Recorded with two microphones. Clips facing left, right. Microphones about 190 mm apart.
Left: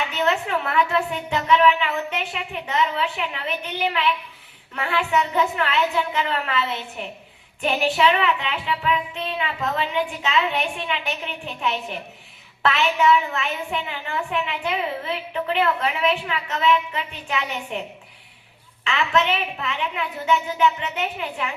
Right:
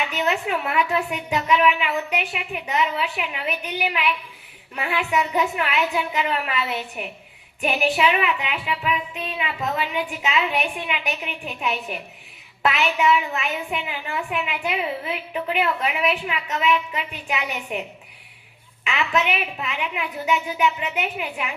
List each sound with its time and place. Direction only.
0.2 s a woman's voice: 15° right (ahead or behind)
18.9 s a woman's voice: 15° right (ahead or behind)